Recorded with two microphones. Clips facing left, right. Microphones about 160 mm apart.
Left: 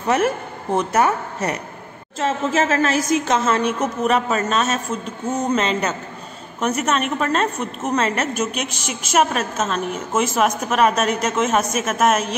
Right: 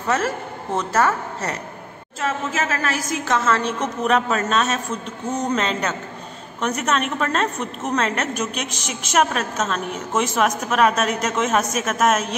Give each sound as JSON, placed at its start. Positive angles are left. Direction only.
{"t": 0.0, "sound": "a woman's voice", "side_deg": 20}
{"t": 2.1, "sound": "a woman's voice", "side_deg": 30}
{"t": 3.8, "sound": "a woman's voice", "side_deg": 5}